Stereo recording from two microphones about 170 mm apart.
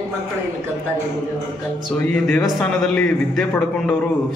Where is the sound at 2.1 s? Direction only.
5° left (ahead or behind).